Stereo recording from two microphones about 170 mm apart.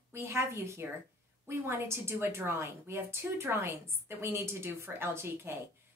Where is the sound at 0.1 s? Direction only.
15° right (ahead or behind).